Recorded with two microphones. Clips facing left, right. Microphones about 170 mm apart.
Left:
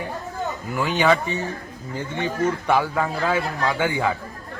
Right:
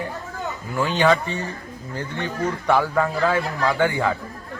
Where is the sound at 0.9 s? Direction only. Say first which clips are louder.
Right 1 dB; 5° left (ahead or behind).